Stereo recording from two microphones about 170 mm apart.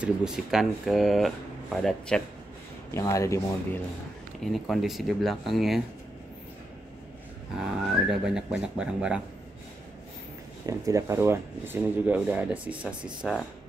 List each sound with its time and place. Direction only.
0.0 s speech: 5° right (ahead or behind)
2.9 s speech: 15° left (ahead or behind)
4.5 s speech: centre (ahead or behind)
8.1 s speech: 5° right (ahead or behind)
10.7 s speech: 20° right (ahead or behind)